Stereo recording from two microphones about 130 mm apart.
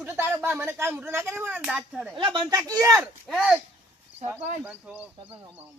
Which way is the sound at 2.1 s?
35° right (ahead or behind).